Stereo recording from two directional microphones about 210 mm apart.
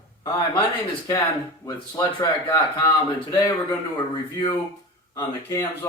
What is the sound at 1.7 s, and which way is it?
Speech, 20° left (ahead or behind).